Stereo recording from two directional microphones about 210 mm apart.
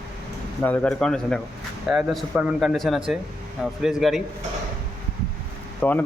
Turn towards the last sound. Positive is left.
turn(degrees=10)  # may be behind; listen again after turning